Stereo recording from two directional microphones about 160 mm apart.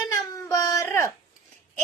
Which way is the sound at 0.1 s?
20° left (ahead or behind).